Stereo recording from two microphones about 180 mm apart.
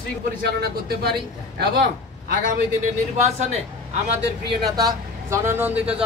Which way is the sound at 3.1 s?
40° right (ahead or behind).